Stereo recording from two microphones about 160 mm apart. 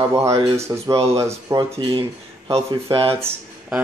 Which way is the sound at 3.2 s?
5° right (ahead or behind).